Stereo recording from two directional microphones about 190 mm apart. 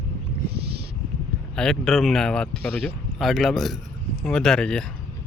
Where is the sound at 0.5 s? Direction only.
60° right (ahead or behind).